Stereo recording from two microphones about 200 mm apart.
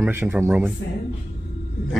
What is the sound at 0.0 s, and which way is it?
Speech, 10° right (ahead or behind).